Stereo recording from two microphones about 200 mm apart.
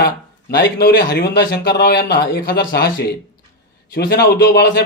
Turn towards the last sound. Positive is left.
turn(degrees=55)  # may be behind; listen again after turning